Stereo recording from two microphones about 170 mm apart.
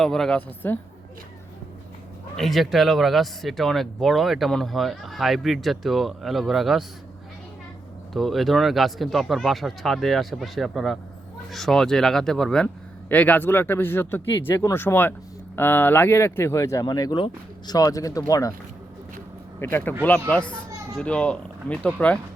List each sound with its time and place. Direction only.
0.0 s speech: 5° left (ahead or behind)
2.3 s speech: centre (ahead or behind)
8.1 s speech: centre (ahead or behind); by 18.5 s 20° left (ahead or behind)
19.5 s speech: 10° left (ahead or behind)